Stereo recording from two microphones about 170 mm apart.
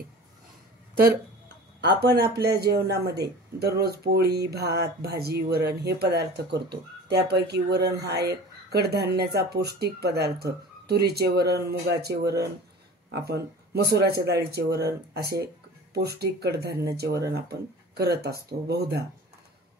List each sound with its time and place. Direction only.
1.8 s speech: 75° right (ahead or behind)